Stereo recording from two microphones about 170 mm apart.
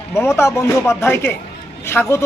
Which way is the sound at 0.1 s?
15° left (ahead or behind).